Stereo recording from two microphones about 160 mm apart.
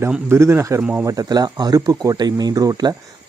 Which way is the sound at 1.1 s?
25° right (ahead or behind).